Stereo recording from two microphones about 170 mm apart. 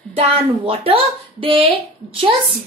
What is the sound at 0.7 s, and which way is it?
A woman's voice, 35° right (ahead or behind).